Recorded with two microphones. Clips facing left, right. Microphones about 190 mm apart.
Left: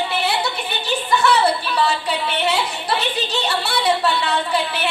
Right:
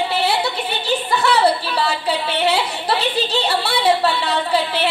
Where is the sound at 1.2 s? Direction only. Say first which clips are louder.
Right 1 dB; 35° right (ahead or behind).